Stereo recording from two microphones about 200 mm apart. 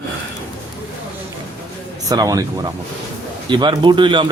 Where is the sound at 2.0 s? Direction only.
15° right (ahead or behind).